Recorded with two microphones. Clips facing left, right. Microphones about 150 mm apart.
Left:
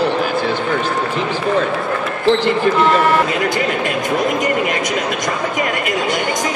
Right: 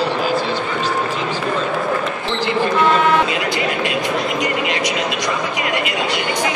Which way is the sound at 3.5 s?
50° left (ahead or behind).